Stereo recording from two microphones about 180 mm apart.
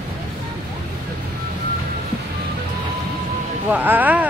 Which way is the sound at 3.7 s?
10° right (ahead or behind).